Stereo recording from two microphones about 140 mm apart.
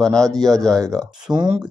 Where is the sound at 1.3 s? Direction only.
30° right (ahead or behind).